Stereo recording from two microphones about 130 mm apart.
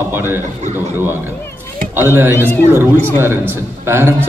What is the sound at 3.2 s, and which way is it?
Speech, 15° right (ahead or behind).